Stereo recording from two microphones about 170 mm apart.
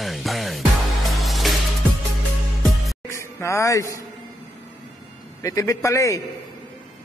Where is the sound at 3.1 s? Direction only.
15° left (ahead or behind).